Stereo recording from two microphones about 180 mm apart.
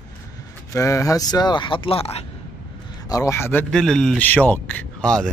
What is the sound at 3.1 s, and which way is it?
Speech, 15° left (ahead or behind).